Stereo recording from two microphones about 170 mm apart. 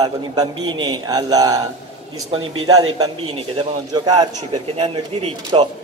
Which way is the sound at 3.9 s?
25° right (ahead or behind).